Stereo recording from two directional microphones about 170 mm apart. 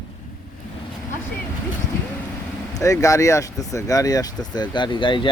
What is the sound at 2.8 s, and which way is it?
Speech, 20° left (ahead or behind).